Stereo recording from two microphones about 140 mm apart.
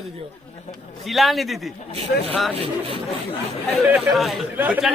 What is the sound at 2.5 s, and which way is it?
Speech, 45° right (ahead or behind).